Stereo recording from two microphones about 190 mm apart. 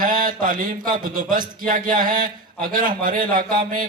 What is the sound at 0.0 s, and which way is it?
A man's voice, 45° right (ahead or behind).